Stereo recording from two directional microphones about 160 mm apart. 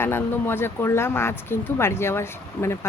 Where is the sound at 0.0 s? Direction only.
15° left (ahead or behind).